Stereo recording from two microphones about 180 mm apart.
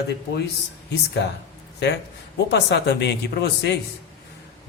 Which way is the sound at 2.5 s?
70° left (ahead or behind).